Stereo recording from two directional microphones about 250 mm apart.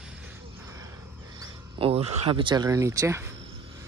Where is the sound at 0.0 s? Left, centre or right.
Centre.